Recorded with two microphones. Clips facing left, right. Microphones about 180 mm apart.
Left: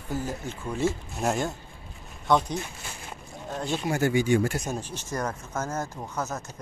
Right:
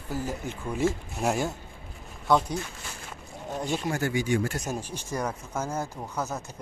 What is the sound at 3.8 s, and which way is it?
Speech, 20° left (ahead or behind).